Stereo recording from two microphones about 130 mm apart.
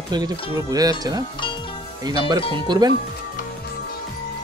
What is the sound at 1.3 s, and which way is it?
Music, 40° left (ahead or behind).